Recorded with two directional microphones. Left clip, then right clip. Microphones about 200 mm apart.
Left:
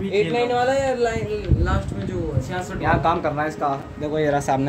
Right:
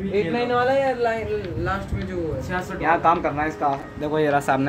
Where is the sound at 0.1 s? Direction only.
40° left (ahead or behind).